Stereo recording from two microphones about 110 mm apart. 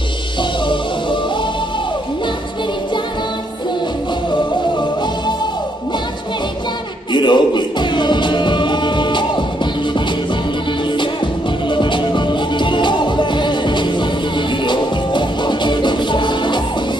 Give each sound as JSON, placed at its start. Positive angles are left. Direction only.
{"t": 0.4, "sound": "music", "side_deg": 45}
{"t": 7.1, "sound": "music", "side_deg": 45}
{"t": 11.7, "sound": "music", "side_deg": 45}